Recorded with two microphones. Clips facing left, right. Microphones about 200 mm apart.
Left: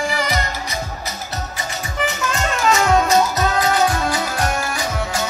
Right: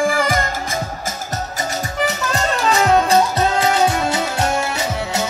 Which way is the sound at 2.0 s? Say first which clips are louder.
Right 1 dB; 35° right (ahead or behind).